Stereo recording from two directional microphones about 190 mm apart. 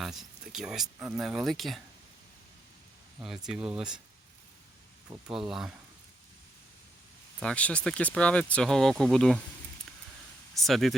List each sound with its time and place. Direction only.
0.0 s a sound: centre (ahead or behind)
0.9 s speech: 15° right (ahead or behind)
1.2 s speech: centre (ahead or behind)
3.2 s speech: centre (ahead or behind)
5.0 s speech: 25° right (ahead or behind)
5.5 s speech: centre (ahead or behind)
7.3 s speech: 5° left (ahead or behind)
10.5 s speech: centre (ahead or behind)